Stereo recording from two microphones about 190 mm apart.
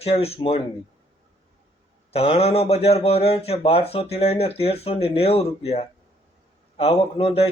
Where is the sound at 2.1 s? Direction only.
30° left (ahead or behind).